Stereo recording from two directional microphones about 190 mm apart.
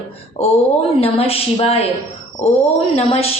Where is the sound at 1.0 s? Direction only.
30° left (ahead or behind).